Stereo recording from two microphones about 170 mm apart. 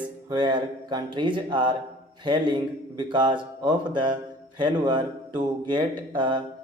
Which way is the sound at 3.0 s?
30° right (ahead or behind).